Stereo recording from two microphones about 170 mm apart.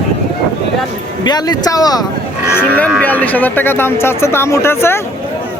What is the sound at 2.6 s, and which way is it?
Speech, 10° left (ahead or behind).